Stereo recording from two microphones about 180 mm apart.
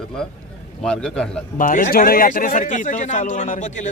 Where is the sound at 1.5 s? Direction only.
50° left (ahead or behind).